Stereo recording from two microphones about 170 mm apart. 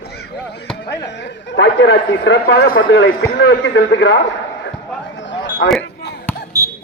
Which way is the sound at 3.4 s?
90° left.